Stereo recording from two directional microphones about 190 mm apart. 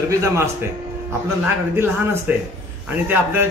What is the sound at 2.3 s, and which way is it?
A man's voice, 10° right (ahead or behind).